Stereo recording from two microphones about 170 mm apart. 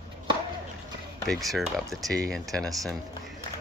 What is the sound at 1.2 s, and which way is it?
Speech, centre (ahead or behind).